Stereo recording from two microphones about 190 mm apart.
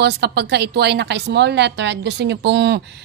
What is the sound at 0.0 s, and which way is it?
A woman's voice, 60° right (ahead or behind).